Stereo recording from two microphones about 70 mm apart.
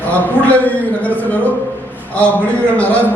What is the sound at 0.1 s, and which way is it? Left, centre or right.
A man's voice, left.